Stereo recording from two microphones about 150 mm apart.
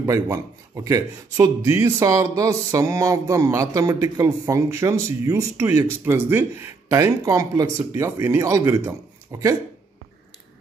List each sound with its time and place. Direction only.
0.0 s speech: 20° right (ahead or behind)